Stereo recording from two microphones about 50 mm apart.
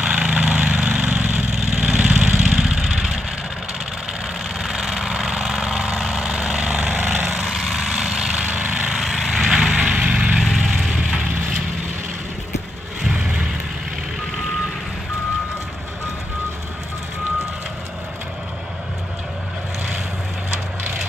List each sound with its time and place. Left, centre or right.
0.0 s a sound: centre
1.5 s vehicle: centre
2.2 s engine: centre
2.8 s vehicle: centre
4.6 s vehicle: centre
6.6 s vehicle: right
7.0 s a sound: right
7.4 s vehicle: centre
8.5 s a sound: right
8.9 s vehicle: centre; by 11.5 s right
13.0 s vehicle: centre